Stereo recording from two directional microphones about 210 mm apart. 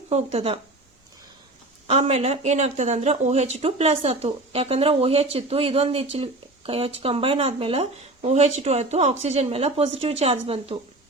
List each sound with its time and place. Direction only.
0.1 s speech: 30° right (ahead or behind)
1.9 s speech: 30° right (ahead or behind)